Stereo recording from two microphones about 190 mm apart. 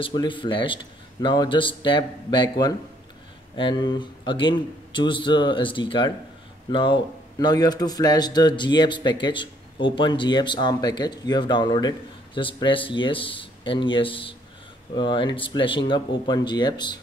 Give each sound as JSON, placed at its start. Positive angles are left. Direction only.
{"t": 0.0, "sound": "speech", "side_deg": 25}